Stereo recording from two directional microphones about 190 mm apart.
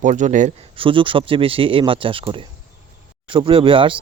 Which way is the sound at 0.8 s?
25° right (ahead or behind).